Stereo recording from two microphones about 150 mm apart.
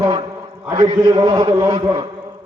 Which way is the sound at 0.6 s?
25° right (ahead or behind).